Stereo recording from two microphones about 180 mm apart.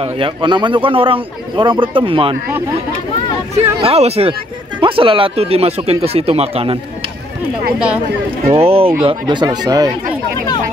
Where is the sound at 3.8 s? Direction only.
35° right (ahead or behind).